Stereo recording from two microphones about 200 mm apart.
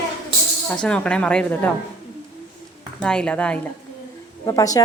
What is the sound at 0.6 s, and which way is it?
A woman's voice, 5° left (ahead or behind).